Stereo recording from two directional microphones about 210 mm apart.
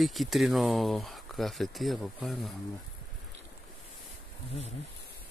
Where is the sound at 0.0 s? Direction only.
Centre (ahead or behind).